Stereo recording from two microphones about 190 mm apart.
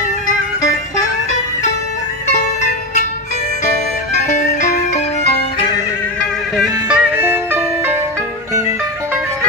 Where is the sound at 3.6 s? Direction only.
35° left (ahead or behind).